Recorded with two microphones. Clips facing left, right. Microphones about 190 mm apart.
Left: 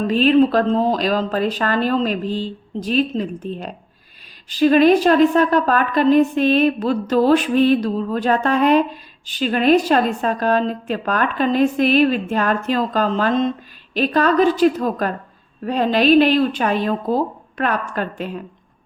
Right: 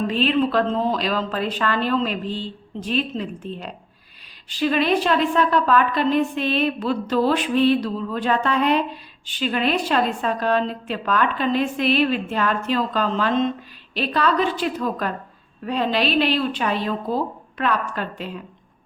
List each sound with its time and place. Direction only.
0.1 s a woman's voice: 40° left (ahead or behind)